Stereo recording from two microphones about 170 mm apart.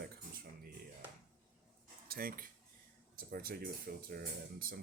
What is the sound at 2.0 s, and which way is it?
Speech, 60° right (ahead or behind).